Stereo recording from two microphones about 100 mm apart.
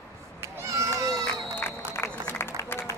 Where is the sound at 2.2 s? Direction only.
20° left (ahead or behind).